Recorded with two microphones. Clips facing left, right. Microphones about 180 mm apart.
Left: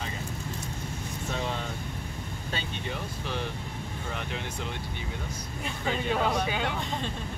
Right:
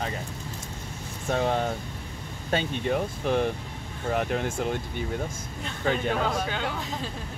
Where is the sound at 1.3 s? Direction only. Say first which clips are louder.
Right 9 dB; 50° right (ahead or behind).